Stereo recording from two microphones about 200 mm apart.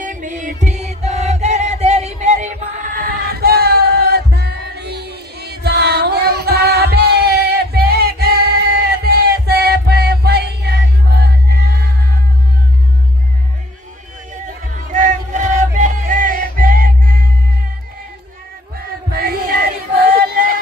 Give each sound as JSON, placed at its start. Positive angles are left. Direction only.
{"t": 0.0, "sound": "music", "side_deg": -40}
{"t": 14.7, "sound": "music", "side_deg": -40}
{"t": 19.1, "sound": "child singing", "side_deg": -50}